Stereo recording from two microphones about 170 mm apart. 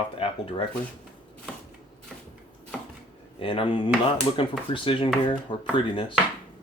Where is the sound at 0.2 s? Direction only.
30° left (ahead or behind).